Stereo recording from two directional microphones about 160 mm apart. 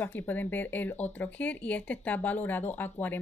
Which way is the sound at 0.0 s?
10° left (ahead or behind).